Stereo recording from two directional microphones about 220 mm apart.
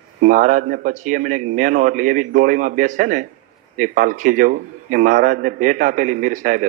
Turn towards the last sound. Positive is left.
turn(degrees=-35)  # may be behind; listen again after turning